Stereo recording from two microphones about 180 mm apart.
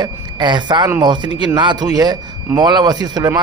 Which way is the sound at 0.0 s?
25° right (ahead or behind).